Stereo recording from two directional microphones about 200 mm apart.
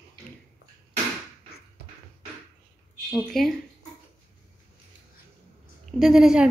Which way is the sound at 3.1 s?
Centre (ahead or behind).